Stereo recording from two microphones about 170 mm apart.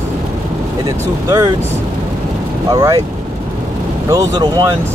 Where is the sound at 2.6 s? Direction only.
20° right (ahead or behind).